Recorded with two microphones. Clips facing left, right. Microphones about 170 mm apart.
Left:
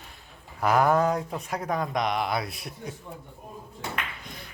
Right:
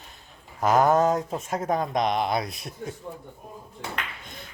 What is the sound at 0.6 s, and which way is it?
Speech, 20° right (ahead or behind).